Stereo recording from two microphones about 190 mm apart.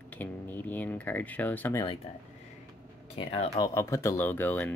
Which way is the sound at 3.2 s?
30° left (ahead or behind).